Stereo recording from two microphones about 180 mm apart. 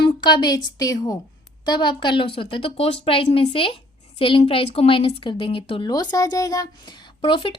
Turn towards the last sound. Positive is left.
turn(degrees=30)  # may be behind; listen again after turning